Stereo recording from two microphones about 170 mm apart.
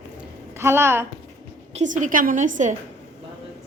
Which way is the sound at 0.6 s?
15° right (ahead or behind).